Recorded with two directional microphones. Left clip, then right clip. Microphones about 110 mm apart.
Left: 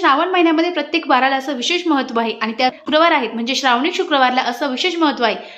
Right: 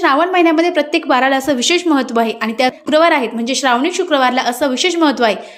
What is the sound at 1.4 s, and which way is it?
A woman's voice, 50° right (ahead or behind).